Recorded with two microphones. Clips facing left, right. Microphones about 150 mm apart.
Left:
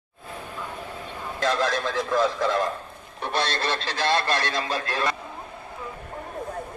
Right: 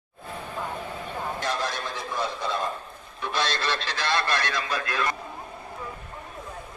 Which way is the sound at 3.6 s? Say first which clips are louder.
Left 3 dB; 30° left (ahead or behind).